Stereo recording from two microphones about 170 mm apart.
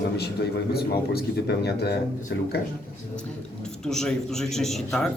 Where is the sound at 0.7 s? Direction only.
65° left (ahead or behind).